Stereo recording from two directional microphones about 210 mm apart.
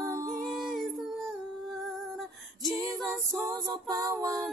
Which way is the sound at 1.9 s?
Centre (ahead or behind).